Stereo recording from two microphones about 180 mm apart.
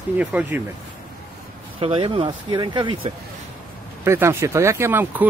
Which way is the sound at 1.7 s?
30° right (ahead or behind).